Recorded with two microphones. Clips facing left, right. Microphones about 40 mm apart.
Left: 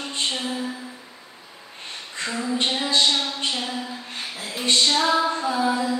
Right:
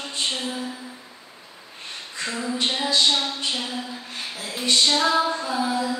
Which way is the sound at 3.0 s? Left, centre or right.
Centre.